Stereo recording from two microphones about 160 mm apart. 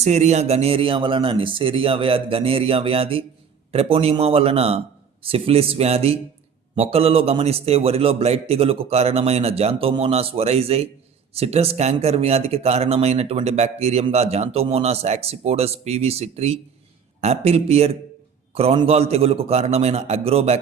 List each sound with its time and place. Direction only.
0.0 s speech: 45° right (ahead or behind)